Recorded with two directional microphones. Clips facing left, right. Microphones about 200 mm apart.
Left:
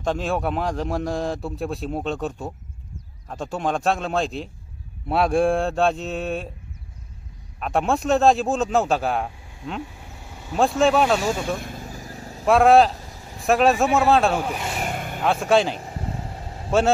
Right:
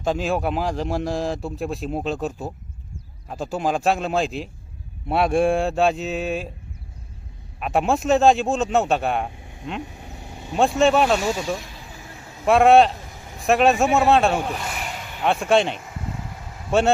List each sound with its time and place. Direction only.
0.0 s a man's voice: centre (ahead or behind)
7.5 s a man's voice: 5° right (ahead or behind)
9.9 s vehicle: 20° right (ahead or behind)
10.6 s a man's voice: centre (ahead or behind)
11.4 s vehicle: 55° left (ahead or behind); by 12.4 s 35° left (ahead or behind)
12.4 s a man's voice: centre (ahead or behind)
14.8 s vehicle: 50° left (ahead or behind)
15.2 s a man's voice: centre (ahead or behind)
15.7 s vehicle: 35° left (ahead or behind)